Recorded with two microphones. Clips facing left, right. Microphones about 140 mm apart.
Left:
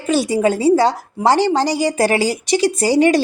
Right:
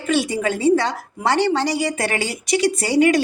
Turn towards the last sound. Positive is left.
turn(degrees=35)  # may be behind; listen again after turning